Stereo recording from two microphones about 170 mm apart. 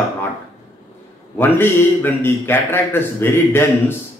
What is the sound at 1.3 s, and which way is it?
A man's voice, 10° left (ahead or behind).